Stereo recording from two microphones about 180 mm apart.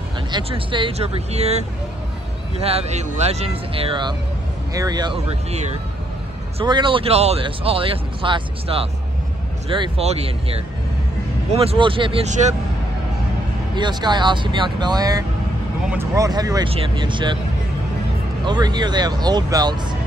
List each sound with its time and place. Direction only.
0.3 s speech: 30° right (ahead or behind)
11.5 s speech: 30° right (ahead or behind)
13.7 s speech: 25° right (ahead or behind)
18.4 s speech: 25° right (ahead or behind)